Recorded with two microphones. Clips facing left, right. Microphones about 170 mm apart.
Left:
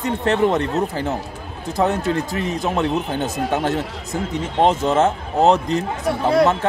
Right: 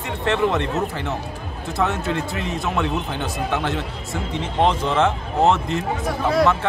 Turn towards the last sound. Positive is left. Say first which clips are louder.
# left 2 dB
turn(degrees=30)  # may be behind; listen again after turning